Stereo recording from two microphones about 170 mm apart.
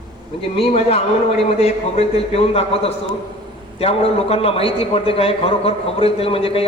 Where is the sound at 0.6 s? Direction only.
35° left (ahead or behind).